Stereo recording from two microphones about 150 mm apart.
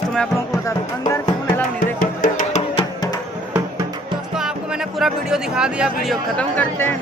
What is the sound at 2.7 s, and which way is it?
Music, 25° left (ahead or behind).